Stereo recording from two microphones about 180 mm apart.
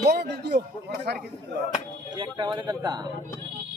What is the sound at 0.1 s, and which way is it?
A man's voice, 65° right (ahead or behind).